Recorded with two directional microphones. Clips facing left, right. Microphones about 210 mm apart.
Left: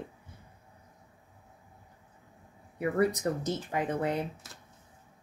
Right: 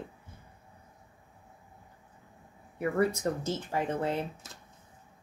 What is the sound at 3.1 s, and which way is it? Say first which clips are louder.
A woman's voice: even; 15° left (ahead or behind).